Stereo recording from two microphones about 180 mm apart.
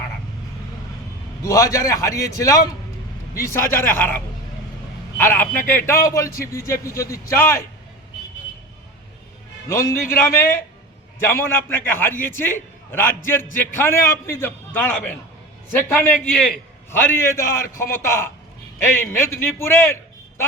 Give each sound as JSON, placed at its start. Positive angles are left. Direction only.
{"t": 1.4, "sound": "a man's voice", "side_deg": 15}
{"t": 9.6, "sound": "a man's voice", "side_deg": 15}